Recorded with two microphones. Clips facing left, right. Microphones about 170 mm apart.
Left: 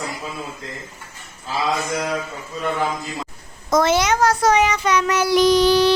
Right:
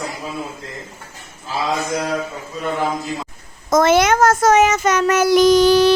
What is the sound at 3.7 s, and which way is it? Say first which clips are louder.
Child singing: right 4 dB; 50° right (ahead or behind).